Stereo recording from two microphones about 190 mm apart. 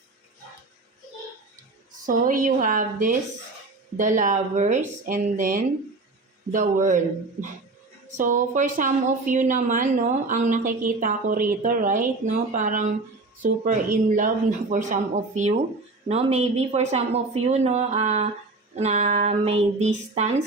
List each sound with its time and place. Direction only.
2.0 s a woman's voice: 45° right (ahead or behind)
8.1 s a woman's voice: 45° right (ahead or behind)